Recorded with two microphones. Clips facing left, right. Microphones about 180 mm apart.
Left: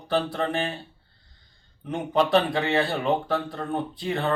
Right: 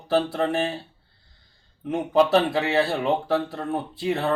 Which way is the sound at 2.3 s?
5° right (ahead or behind).